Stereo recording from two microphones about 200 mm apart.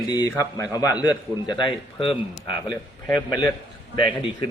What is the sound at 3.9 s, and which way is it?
Speech, 25° left (ahead or behind).